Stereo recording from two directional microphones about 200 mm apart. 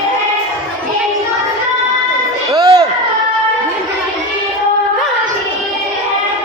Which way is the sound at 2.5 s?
20° right (ahead or behind).